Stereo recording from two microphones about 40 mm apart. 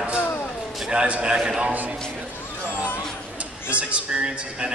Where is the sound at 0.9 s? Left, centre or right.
Right.